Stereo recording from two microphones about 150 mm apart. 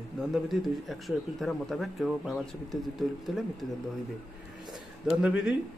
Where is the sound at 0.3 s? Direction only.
Centre (ahead or behind).